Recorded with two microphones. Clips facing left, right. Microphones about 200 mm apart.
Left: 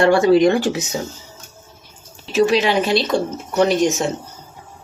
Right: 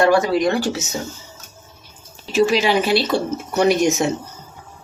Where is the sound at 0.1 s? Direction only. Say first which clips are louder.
Left 4 dB; 25° left (ahead or behind).